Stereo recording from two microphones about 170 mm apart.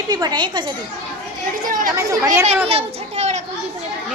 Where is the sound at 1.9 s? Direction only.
20° right (ahead or behind).